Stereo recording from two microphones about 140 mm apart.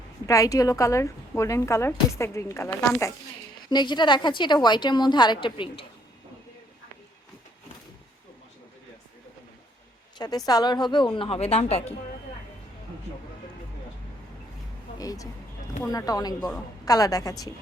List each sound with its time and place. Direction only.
0.3 s a woman's voice: 25° left (ahead or behind)
3.7 s a woman's voice: 30° left (ahead or behind)
10.2 s a woman's voice: 30° left (ahead or behind); by 11.9 s 45° left (ahead or behind)
14.9 s a woman's voice: 25° left (ahead or behind)